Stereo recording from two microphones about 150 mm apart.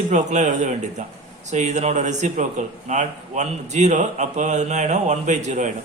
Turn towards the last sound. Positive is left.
turn(degrees=-55)  # may be behind; listen again after turning